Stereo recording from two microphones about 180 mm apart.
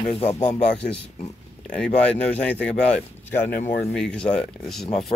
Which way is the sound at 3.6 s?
40° left (ahead or behind).